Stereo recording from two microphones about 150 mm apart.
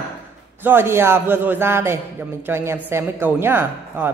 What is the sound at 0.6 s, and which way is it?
A man's voice, 15° right (ahead or behind).